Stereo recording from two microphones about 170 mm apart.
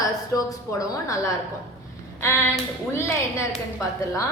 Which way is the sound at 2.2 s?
15° left (ahead or behind).